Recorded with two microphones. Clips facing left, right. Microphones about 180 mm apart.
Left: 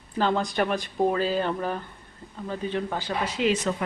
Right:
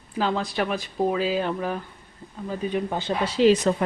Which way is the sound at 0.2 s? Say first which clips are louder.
Left 1 dB; centre (ahead or behind).